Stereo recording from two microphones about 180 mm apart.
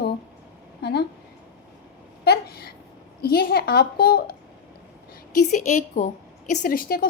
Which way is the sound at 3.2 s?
55° left (ahead or behind).